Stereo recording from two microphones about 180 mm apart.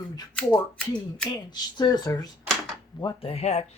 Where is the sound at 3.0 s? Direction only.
30° left (ahead or behind).